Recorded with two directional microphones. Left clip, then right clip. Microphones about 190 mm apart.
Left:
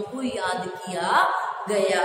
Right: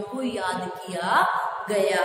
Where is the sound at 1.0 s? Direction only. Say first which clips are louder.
Left 1 dB; 5° right (ahead or behind).